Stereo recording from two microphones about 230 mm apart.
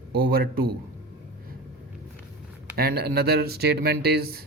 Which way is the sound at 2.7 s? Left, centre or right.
Right.